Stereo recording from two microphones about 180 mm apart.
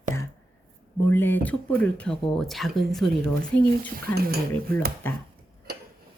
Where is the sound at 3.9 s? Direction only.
55° right (ahead or behind).